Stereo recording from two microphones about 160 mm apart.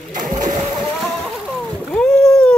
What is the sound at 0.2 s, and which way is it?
Splash, 55° right (ahead or behind).